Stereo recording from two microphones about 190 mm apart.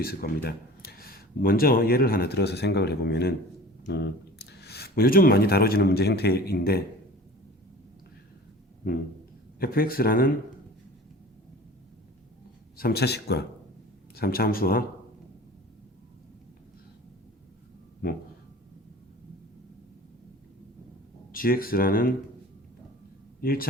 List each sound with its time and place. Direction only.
0.0 s speech: 55° left (ahead or behind)
9.6 s speech: 50° left (ahead or behind)
12.7 s speech: 55° left (ahead or behind)
21.3 s speech: 50° left (ahead or behind)
23.4 s speech: 50° left (ahead or behind)